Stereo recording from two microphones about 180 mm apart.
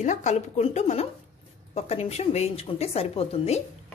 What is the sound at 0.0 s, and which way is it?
A woman's voice, 40° left (ahead or behind).